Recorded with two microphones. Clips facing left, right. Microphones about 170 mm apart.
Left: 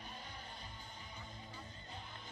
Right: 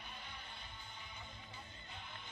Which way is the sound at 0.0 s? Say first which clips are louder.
Left 2 dB; 40° left (ahead or behind).